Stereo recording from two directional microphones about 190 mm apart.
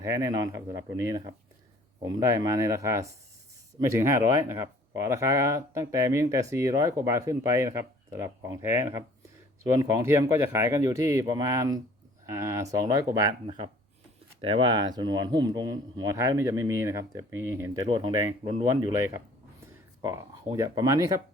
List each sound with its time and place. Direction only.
0.0 s speech: 15° right (ahead or behind)